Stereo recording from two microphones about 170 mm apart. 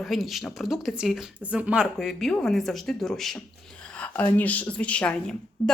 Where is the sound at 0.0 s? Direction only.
Centre (ahead or behind).